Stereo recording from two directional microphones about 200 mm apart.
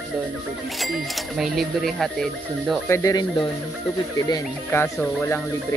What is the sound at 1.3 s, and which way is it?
Speech, centre (ahead or behind).